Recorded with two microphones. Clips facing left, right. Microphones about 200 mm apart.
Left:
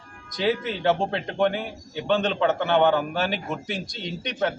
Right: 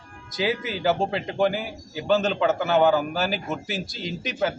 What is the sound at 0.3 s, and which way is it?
A man's voice, 5° right (ahead or behind).